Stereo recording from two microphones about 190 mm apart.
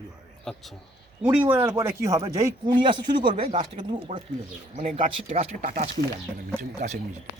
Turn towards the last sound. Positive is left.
turn(degrees=-40)  # may be behind; listen again after turning